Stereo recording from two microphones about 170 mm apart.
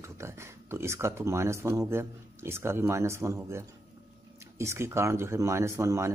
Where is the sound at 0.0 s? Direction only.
15° right (ahead or behind).